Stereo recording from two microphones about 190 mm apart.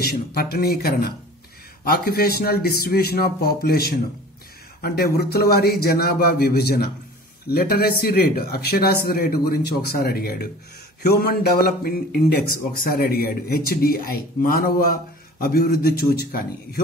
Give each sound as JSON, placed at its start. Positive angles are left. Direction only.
{"t": 0.0, "sound": "speech", "side_deg": 55}